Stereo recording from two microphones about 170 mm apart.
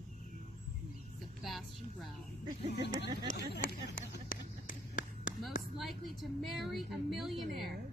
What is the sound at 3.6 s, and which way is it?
Run, 55° left (ahead or behind).